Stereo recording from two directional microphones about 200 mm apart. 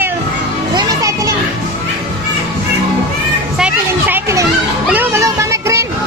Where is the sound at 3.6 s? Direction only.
5° right (ahead or behind).